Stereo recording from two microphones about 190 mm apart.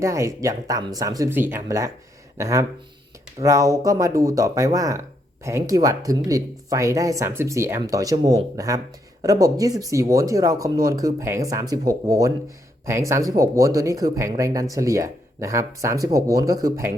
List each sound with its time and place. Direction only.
0.0 s speech: 15° right (ahead or behind)